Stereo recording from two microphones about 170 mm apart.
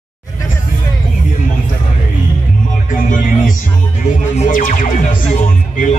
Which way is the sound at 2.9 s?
50° left (ahead or behind).